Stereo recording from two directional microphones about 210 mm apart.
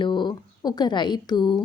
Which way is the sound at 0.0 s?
20° left (ahead or behind).